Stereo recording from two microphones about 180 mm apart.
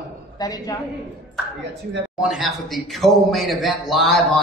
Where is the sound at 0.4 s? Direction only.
20° left (ahead or behind).